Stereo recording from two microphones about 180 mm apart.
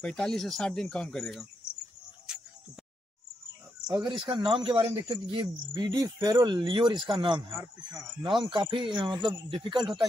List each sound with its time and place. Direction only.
0.0 s speech: 5° left (ahead or behind)
4.1 s speech: 25° right (ahead or behind)
7.5 s speech: 15° right (ahead or behind)
8.4 s speech: 25° right (ahead or behind)